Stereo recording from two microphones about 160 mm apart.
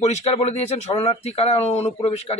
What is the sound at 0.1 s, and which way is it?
A man's voice, 40° left (ahead or behind).